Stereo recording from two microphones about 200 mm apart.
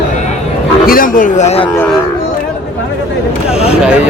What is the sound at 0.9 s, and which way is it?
Speech, 45° left (ahead or behind).